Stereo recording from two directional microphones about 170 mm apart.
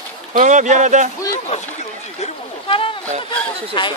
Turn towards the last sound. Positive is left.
turn(degrees=30)  # may be behind; listen again after turning